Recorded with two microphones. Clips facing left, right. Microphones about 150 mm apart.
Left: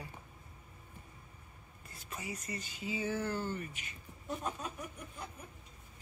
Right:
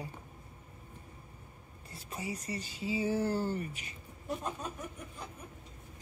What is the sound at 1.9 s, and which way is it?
Speech, 35° right (ahead or behind).